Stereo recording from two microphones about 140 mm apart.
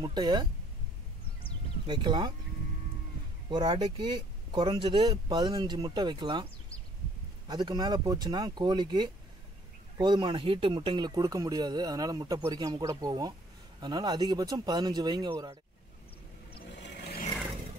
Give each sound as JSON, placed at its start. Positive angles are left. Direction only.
{"t": 0.0, "sound": "speech", "side_deg": -30}
{"t": 1.9, "sound": "speech", "side_deg": -35}
{"t": 3.4, "sound": "speech", "side_deg": -35}
{"t": 7.4, "sound": "speech", "side_deg": -30}